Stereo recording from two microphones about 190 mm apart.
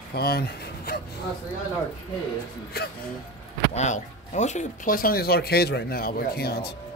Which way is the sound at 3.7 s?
40° left (ahead or behind).